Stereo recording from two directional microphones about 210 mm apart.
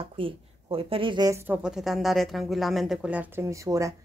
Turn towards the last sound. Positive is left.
turn(degrees=-15)  # may be behind; listen again after turning